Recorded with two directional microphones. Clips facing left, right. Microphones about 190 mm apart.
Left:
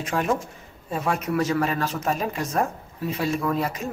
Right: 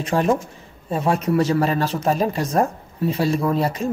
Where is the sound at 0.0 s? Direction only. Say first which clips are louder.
Right 5 dB; 35° right (ahead or behind).